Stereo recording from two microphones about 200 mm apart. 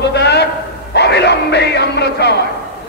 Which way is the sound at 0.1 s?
55° left (ahead or behind).